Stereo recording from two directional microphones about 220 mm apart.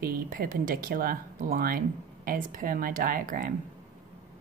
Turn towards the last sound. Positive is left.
turn(degrees=-40)  # may be behind; listen again after turning